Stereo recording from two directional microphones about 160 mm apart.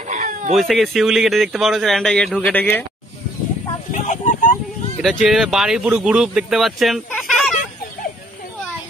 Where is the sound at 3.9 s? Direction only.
55° left (ahead or behind).